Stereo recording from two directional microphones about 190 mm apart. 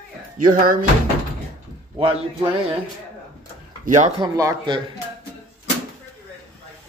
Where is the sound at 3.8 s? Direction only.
40° right (ahead or behind).